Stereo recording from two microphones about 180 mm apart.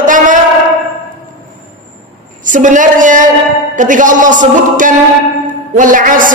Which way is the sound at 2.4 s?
45° right (ahead or behind).